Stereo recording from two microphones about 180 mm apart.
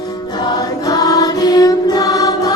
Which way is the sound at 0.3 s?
20° left (ahead or behind).